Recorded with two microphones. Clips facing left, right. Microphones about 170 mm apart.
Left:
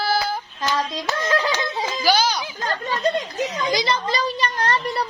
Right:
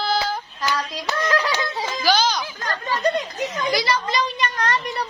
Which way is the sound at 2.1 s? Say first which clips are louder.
Even; 10° left (ahead or behind).